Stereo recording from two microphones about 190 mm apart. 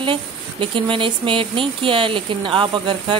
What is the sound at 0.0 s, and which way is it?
Speech, 25° right (ahead or behind).